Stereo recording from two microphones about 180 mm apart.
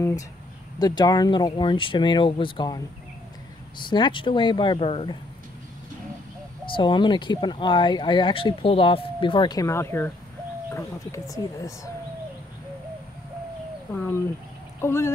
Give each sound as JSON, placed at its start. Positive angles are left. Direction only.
{"t": 0.7, "sound": "speech", "side_deg": 20}
{"t": 3.9, "sound": "speech", "side_deg": 25}
{"t": 6.7, "sound": "speech", "side_deg": 25}
{"t": 14.8, "sound": "speech", "side_deg": 15}